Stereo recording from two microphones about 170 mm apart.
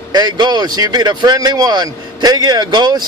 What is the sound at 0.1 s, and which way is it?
Speech, 25° right (ahead or behind).